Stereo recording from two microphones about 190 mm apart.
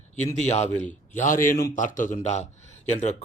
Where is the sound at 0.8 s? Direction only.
40° left (ahead or behind).